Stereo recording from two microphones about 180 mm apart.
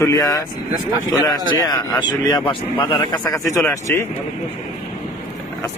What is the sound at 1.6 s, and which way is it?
Speech, 20° left (ahead or behind).